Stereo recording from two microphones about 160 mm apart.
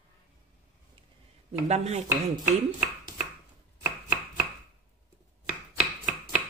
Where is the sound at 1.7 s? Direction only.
45° right (ahead or behind).